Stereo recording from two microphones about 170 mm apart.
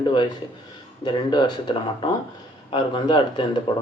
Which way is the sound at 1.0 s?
25° left (ahead or behind).